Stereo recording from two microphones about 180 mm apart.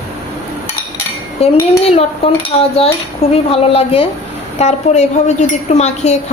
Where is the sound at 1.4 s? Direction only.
35° left (ahead or behind).